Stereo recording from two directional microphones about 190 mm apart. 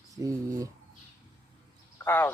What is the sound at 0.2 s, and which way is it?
Speech, 15° right (ahead or behind).